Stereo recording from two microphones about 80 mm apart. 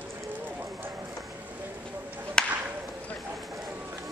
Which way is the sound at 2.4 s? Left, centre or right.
Centre.